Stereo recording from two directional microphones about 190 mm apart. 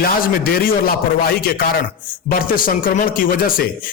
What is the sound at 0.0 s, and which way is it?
A man's voice, 50° left (ahead or behind).